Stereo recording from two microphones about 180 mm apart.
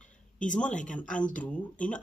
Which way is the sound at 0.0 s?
45° left (ahead or behind).